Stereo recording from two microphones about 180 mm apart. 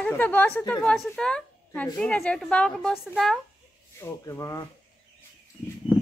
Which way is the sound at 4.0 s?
15° left (ahead or behind).